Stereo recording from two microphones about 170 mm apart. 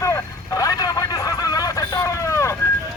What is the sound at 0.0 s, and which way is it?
Vehicle, 20° left (ahead or behind).